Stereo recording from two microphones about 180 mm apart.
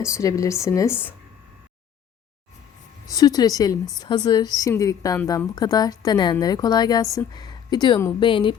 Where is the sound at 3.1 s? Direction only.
20° left (ahead or behind).